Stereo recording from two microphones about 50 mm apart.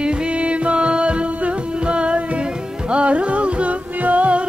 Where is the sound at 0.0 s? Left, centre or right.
Centre.